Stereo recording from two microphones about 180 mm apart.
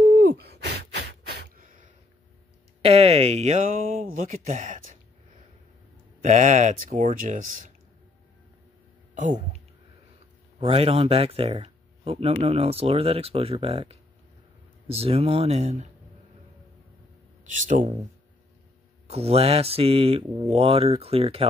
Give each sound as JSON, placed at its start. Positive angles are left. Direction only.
{"t": 0.0, "sound": "gasp", "side_deg": -50}
{"t": 2.8, "sound": "speech", "side_deg": -35}
{"t": 6.2, "sound": "speech", "side_deg": -45}
{"t": 9.1, "sound": "speech", "side_deg": -45}
{"t": 10.6, "sound": "speech", "side_deg": -35}
{"t": 17.5, "sound": "speech", "side_deg": -45}
{"t": 19.0, "sound": "speech", "side_deg": -35}